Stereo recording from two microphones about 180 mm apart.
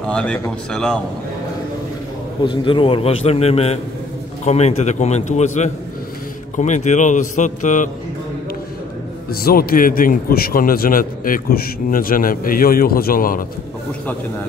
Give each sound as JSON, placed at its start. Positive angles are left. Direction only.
{"t": 0.0, "sound": "speech", "side_deg": 5}
{"t": 2.4, "sound": "a man's voice", "side_deg": 25}
{"t": 9.3, "sound": "speech", "side_deg": 55}